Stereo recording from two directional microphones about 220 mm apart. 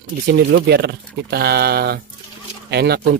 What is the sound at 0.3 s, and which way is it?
Speech, 45° right (ahead or behind).